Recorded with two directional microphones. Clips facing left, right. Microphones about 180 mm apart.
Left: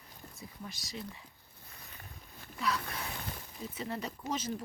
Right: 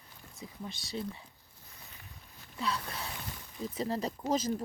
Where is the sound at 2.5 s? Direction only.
30° right (ahead or behind).